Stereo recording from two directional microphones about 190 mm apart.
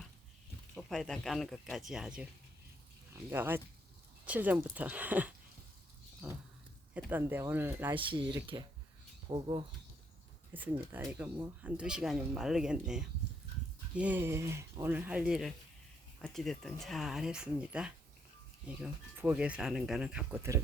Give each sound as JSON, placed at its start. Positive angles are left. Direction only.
{"t": 0.8, "sound": "speech", "side_deg": 0}
{"t": 6.2, "sound": "a sound", "side_deg": -10}
{"t": 6.9, "sound": "speech", "side_deg": -10}
{"t": 7.9, "sound": "speech", "side_deg": -25}
{"t": 10.5, "sound": "speech", "side_deg": -10}